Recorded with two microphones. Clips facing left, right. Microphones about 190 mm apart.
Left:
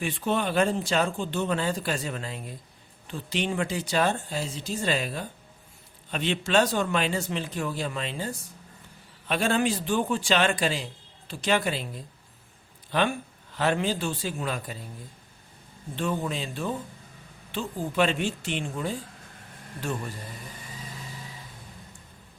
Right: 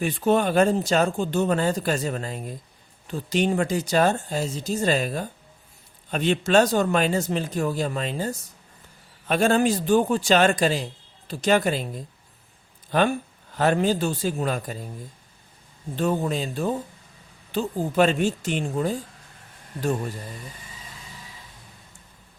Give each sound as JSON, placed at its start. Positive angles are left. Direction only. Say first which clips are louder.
{"t": 0.0, "sound": "speech", "louder": "right 6 dB", "side_deg": -45}
{"t": 16.0, "sound": "speech", "louder": "right 5 dB", "side_deg": -40}